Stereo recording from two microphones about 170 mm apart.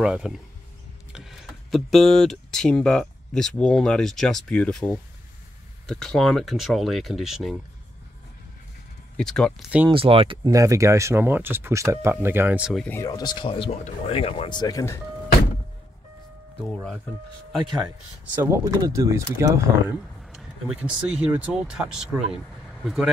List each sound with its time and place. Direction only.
0.0 s speech: 5° right (ahead or behind)
9.1 s speech: 5° left (ahead or behind)
9.8 s speech: 30° right (ahead or behind)
10.5 s speech: 20° right (ahead or behind)
12.8 s speech: 15° left (ahead or behind)
18.3 s speech: 15° right (ahead or behind)
20.2 s speech: 5° right (ahead or behind)